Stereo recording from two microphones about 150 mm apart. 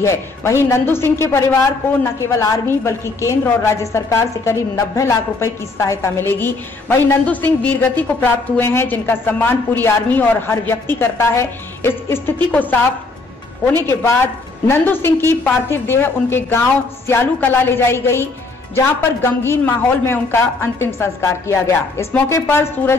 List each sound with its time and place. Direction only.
0.0 s a woman's voice: 20° left (ahead or behind)
14.7 s a woman's voice: 15° left (ahead or behind)